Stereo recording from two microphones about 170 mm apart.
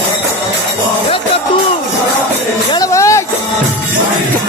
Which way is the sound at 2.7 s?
20° left (ahead or behind).